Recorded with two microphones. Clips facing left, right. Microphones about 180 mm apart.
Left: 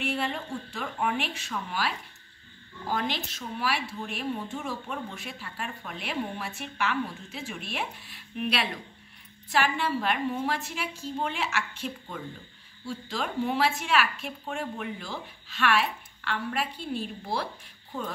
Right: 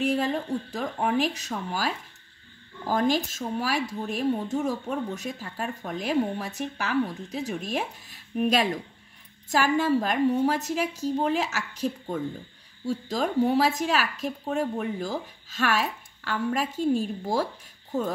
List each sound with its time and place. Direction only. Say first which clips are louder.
0.0 s speech: right 6 dB; 40° right (ahead or behind)